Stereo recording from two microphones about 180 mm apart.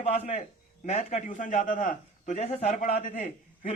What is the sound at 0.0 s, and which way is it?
A man's voice, 35° left (ahead or behind).